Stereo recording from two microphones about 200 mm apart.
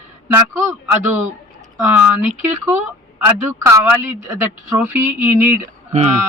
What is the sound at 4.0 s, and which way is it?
A woman's voice, 10° right (ahead or behind).